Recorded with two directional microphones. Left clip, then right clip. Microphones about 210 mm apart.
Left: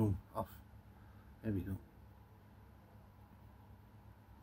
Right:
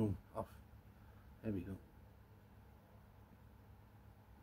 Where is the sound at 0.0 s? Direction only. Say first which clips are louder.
Left 3 dB; centre (ahead or behind).